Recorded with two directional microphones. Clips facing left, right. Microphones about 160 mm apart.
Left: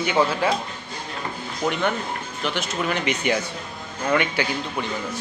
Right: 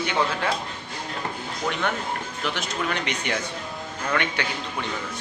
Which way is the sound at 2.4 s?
Centre (ahead or behind).